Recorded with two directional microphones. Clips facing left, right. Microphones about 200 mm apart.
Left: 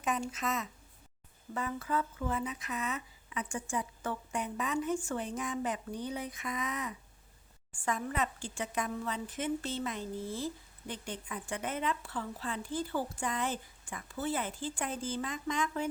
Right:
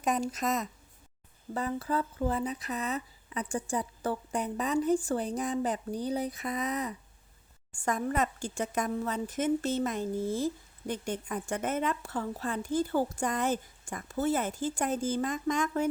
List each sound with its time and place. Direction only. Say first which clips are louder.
0.0 s a woman's voice: right 5 dB; 40° right (ahead or behind)